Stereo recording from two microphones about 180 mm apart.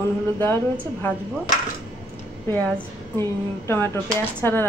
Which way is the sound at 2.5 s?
10° left (ahead or behind).